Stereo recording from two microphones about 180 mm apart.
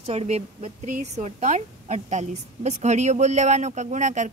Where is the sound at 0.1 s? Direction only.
35° right (ahead or behind).